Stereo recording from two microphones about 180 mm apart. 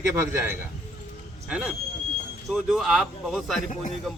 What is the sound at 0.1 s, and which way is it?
A man's voice, 10° right (ahead or behind).